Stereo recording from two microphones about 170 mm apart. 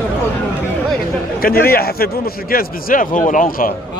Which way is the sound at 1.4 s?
60° left (ahead or behind).